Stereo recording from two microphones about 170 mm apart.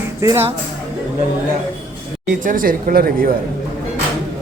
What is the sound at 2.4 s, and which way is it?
Speech, 55° right (ahead or behind).